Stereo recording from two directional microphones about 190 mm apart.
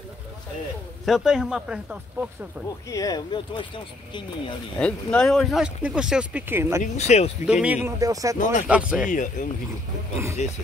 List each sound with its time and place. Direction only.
1.0 s speech: centre (ahead or behind)
2.9 s speech: 20° left (ahead or behind)
4.7 s speech: 5° left (ahead or behind); by 6.8 s 10° right (ahead or behind)
6.8 s speech: 35° left (ahead or behind)
7.4 s speech: 5° right (ahead or behind)
8.6 s speech: 5° right (ahead or behind)
9.1 s speech: 45° left (ahead or behind)